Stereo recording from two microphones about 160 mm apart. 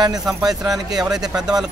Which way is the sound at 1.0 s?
5° right (ahead or behind).